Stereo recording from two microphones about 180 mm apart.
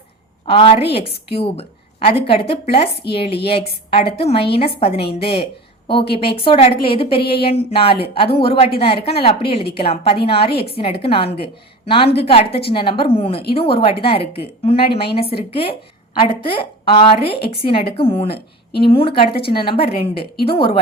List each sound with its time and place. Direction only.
0.4 s a woman's voice: 30° left (ahead or behind)
18.3 s a woman's voice: 65° left (ahead or behind)
18.8 s a woman's voice: 30° left (ahead or behind)